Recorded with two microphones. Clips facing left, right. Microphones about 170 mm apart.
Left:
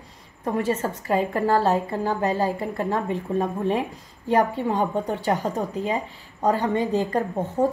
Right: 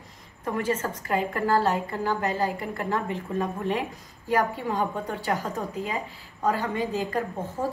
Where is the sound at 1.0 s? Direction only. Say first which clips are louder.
Left 4 dB; 30° left (ahead or behind).